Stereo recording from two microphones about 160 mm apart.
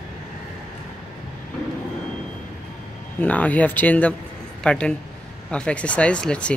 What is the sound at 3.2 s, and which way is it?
Speech, 10° left (ahead or behind).